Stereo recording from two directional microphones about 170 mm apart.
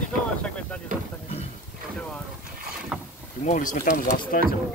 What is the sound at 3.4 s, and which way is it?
Speech, 50° left (ahead or behind).